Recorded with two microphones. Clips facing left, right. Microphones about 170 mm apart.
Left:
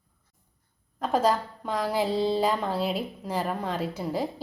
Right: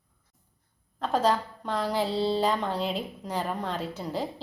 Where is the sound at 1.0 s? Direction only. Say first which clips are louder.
Left 1 dB; 10° left (ahead or behind).